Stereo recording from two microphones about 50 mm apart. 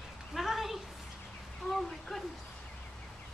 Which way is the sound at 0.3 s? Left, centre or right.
Centre.